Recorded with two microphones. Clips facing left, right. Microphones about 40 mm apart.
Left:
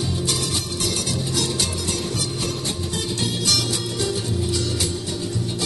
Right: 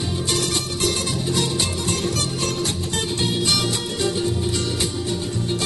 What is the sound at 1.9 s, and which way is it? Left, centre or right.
Music, right.